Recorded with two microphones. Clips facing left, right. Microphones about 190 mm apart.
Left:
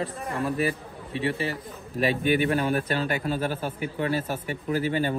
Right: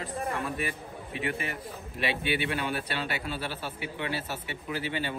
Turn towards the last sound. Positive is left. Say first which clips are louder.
# left 7 dB
turn(degrees=45)  # may be behind; listen again after turning